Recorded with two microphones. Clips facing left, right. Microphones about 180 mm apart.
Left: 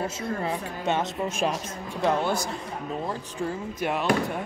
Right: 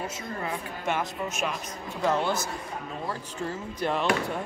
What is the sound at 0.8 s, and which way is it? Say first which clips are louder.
Speech: left 3 dB; 20° left (ahead or behind).